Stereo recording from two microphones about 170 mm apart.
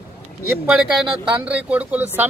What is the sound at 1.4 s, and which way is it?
Speech, 10° right (ahead or behind).